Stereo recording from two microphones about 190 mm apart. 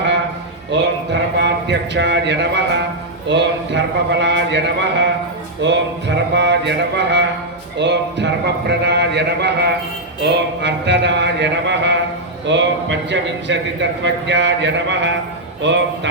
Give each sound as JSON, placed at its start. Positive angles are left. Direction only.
{"t": 1.4, "sound": "a man's voice", "side_deg": -65}